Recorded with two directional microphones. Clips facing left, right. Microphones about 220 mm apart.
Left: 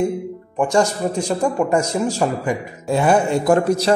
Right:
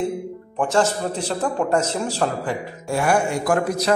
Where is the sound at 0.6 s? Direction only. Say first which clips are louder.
Left 2 dB; 10° left (ahead or behind).